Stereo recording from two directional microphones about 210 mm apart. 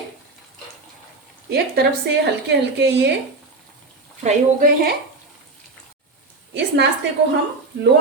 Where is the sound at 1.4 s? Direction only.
50° right (ahead or behind).